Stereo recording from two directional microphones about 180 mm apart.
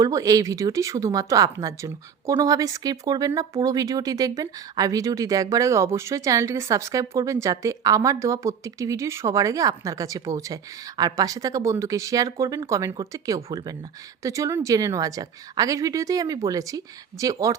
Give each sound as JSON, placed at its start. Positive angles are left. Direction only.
{"t": 0.0, "sound": "speech", "side_deg": -20}